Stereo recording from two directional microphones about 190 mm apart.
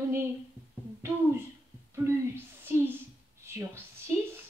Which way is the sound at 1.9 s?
10° right (ahead or behind).